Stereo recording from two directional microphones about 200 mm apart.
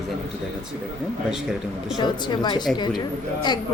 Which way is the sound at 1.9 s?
20° left (ahead or behind).